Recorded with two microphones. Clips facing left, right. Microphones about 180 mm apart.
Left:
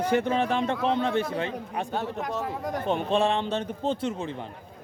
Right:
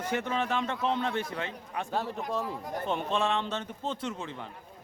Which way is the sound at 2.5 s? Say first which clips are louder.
Left 5 dB; 85° left.